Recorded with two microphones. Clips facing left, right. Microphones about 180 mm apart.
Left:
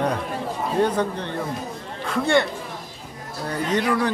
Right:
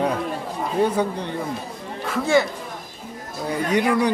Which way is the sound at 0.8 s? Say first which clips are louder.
Right 1 dB; 10° right (ahead or behind).